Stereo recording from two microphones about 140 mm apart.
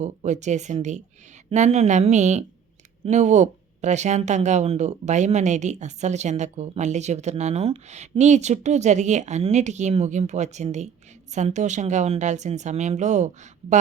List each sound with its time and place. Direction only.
0.0 s speech: 55° right (ahead or behind)